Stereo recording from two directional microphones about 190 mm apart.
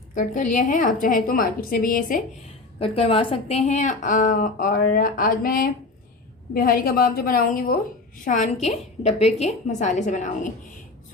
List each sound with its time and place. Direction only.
0.1 s a woman's voice: 40° left (ahead or behind)
2.7 s a woman's voice: 30° left (ahead or behind)